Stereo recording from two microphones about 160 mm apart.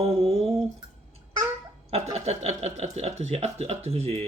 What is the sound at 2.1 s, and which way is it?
Speech, 40° right (ahead or behind).